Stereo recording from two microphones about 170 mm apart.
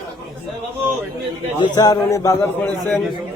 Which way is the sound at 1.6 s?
25° left (ahead or behind).